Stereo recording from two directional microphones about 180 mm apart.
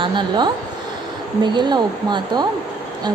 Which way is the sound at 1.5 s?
25° right (ahead or behind).